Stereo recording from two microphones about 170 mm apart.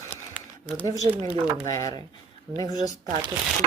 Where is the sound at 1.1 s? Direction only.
35° right (ahead or behind).